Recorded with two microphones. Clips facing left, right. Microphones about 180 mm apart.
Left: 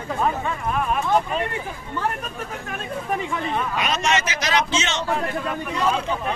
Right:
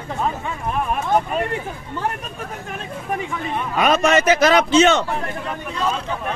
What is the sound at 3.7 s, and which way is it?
A man's voice, 50° right (ahead or behind).